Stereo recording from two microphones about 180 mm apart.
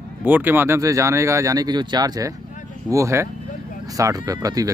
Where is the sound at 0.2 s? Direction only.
10° right (ahead or behind).